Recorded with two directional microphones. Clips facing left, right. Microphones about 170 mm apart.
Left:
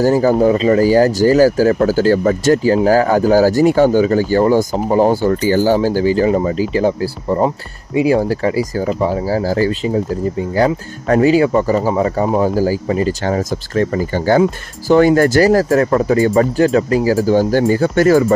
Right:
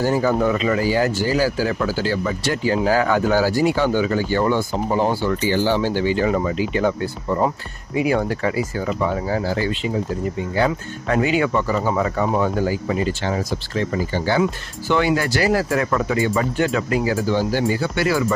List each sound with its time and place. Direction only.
0.0 s speech: 40° left (ahead or behind)